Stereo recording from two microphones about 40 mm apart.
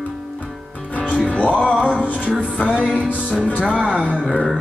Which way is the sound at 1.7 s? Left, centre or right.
Centre.